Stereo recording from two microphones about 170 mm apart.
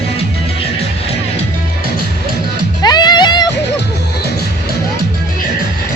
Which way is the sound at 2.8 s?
25° left (ahead or behind).